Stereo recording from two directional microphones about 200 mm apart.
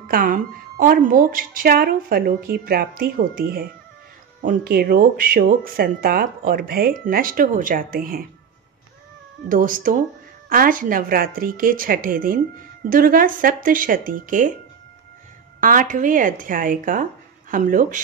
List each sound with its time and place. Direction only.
0.1 s speech: 45° right (ahead or behind)
9.5 s speech: 45° right (ahead or behind)
15.6 s speech: 40° right (ahead or behind)